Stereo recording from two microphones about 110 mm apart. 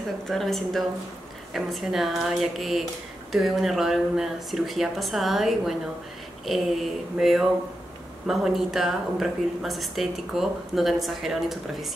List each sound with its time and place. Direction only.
0.3 s speech: centre (ahead or behind)
7.2 s speech: 5° right (ahead or behind)